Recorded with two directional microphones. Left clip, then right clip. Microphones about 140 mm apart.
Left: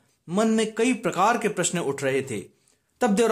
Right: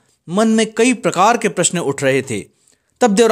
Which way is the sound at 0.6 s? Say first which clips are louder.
Right 9 dB; 45° right (ahead or behind).